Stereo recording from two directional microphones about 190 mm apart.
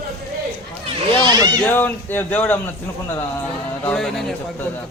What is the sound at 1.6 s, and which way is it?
Speech, 10° left (ahead or behind).